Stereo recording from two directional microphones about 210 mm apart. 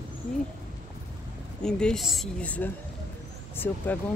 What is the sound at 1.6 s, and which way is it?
Speech, 5° left (ahead or behind).